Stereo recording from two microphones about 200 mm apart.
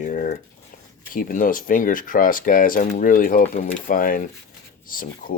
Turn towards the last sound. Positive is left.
turn(degrees=45)  # may be behind; listen again after turning